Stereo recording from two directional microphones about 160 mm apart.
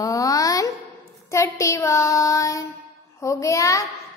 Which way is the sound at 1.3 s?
20° left (ahead or behind).